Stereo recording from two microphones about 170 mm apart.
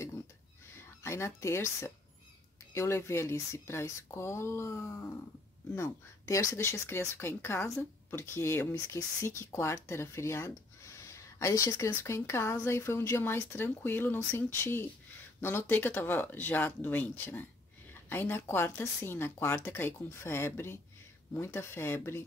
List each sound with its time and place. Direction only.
0.7 s speech: 15° left (ahead or behind)